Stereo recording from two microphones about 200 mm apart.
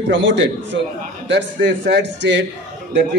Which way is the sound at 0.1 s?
65° right (ahead or behind).